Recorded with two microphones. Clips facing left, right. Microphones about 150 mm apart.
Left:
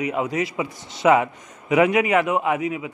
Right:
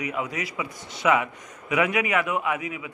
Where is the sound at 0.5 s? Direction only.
35° left (ahead or behind).